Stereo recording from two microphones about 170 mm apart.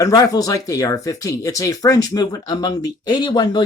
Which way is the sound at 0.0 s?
20° left (ahead or behind).